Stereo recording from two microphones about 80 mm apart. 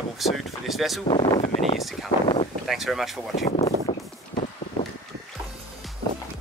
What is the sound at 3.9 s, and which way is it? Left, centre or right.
Vehicle, left.